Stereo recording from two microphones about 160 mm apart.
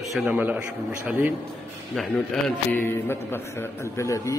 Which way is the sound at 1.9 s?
5° left (ahead or behind).